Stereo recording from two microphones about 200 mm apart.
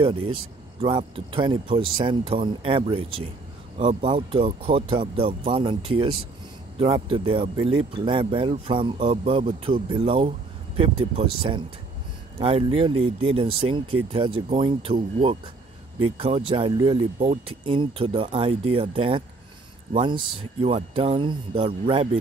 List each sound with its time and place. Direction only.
0.0 s speech: 30° right (ahead or behind)